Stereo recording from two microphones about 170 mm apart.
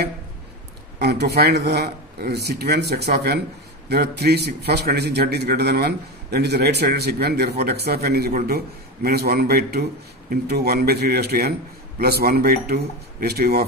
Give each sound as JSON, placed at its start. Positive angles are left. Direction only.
{"t": 0.9, "sound": "a man's voice", "side_deg": -75}